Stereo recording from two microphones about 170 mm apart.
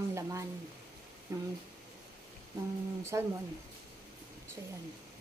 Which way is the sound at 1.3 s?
20° right (ahead or behind).